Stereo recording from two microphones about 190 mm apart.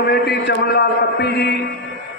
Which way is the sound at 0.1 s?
60° left (ahead or behind).